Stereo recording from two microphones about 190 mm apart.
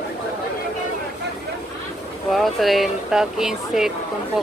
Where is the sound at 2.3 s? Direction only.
Centre (ahead or behind).